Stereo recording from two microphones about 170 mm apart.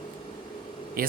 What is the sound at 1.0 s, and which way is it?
Speech, 60° right (ahead or behind).